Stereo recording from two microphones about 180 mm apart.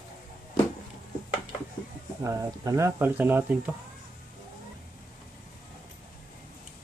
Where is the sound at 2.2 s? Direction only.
15° right (ahead or behind).